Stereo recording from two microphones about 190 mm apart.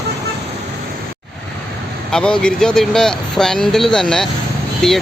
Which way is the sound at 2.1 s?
5° left (ahead or behind).